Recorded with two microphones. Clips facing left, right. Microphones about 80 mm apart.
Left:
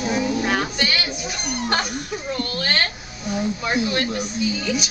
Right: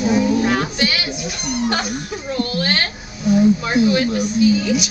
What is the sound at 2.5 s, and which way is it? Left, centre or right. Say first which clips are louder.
Speech: right 1 dB; centre.